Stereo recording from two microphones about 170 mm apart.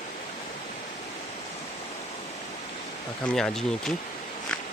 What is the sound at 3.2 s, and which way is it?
Speech, 5° left (ahead or behind).